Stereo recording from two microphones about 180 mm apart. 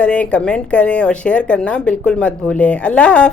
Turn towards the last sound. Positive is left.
turn(degrees=5)  # may be behind; listen again after turning